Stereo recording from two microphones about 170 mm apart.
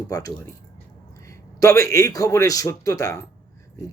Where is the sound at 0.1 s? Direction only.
20° left (ahead or behind).